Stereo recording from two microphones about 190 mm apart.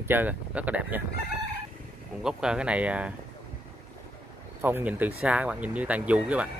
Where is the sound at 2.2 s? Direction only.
5° right (ahead or behind).